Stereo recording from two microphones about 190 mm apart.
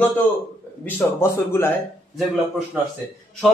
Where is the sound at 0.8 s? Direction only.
10° left (ahead or behind).